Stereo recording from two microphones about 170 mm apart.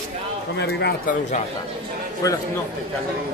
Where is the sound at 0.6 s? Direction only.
80° left.